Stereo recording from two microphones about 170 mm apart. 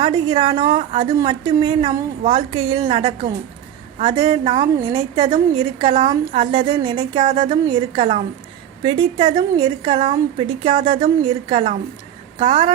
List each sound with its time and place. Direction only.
0.0 s a woman's voice: 25° right (ahead or behind)